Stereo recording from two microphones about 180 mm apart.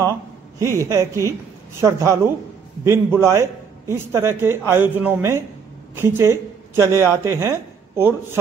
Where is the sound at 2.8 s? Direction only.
15° right (ahead or behind).